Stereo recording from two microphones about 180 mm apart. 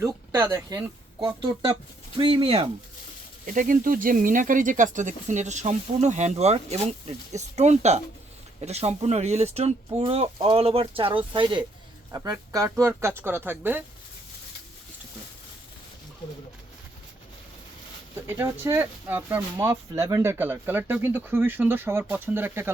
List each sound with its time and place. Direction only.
0.0 s speech: 15° right (ahead or behind); by 2.6 s 30° right (ahead or behind)
3.4 s speech: 50° right (ahead or behind); by 11.2 s 30° right (ahead or behind)
12.1 s speech: 15° right (ahead or behind)
18.3 s speech: 15° right (ahead or behind)